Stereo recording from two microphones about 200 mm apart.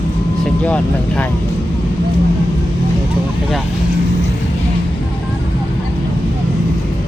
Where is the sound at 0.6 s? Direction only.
5° left (ahead or behind).